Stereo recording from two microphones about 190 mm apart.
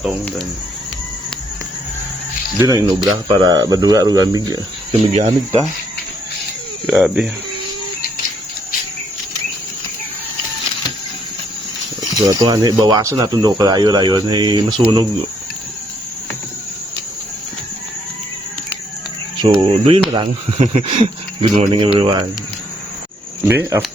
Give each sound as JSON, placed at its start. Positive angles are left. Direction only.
{"t": 0.0, "sound": "speech", "side_deg": 0}
{"t": 2.6, "sound": "speech", "side_deg": -20}
{"t": 5.1, "sound": "speech", "side_deg": -35}
{"t": 6.8, "sound": "speech", "side_deg": -5}
{"t": 12.2, "sound": "speech", "side_deg": -20}
{"t": 19.4, "sound": "speech", "side_deg": -30}
{"t": 23.5, "sound": "speech", "side_deg": -15}